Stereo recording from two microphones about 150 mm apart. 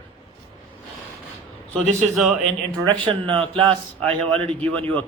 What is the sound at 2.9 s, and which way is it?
A man's voice, 35° right (ahead or behind).